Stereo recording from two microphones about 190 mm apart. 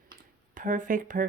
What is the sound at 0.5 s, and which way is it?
Speech, 45° right (ahead or behind).